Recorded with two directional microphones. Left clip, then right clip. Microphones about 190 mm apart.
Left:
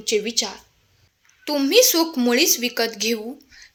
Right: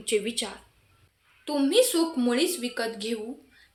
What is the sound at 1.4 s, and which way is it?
A woman's voice, 40° left (ahead or behind).